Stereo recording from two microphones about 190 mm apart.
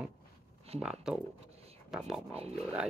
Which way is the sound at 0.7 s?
35° right (ahead or behind).